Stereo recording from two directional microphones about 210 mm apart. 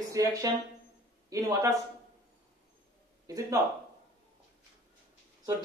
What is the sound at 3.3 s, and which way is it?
Speech, 15° right (ahead or behind).